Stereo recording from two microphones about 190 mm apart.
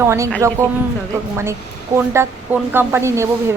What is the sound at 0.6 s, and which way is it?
Speech, 15° right (ahead or behind).